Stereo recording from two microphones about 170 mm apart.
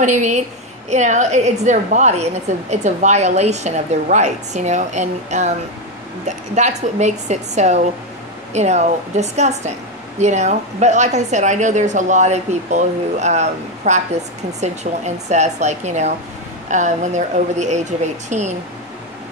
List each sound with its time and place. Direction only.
0.0 s a woman's voice: 45° right (ahead or behind)